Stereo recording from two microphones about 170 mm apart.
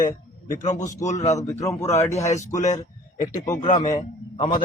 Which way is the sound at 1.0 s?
45° left (ahead or behind).